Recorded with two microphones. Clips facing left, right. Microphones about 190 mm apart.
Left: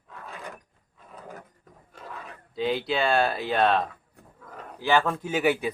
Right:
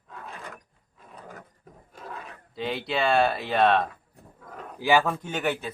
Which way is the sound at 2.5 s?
Centre (ahead or behind).